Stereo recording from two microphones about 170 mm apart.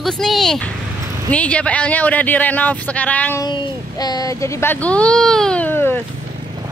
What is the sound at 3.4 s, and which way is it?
Speech, 25° left (ahead or behind).